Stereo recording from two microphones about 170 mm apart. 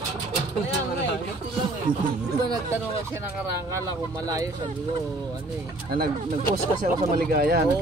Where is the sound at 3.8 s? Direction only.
20° right (ahead or behind).